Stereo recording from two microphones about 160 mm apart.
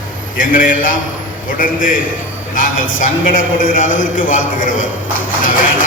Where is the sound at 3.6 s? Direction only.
55° left (ahead or behind).